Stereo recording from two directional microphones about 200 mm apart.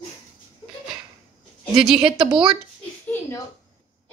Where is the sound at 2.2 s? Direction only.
25° right (ahead or behind).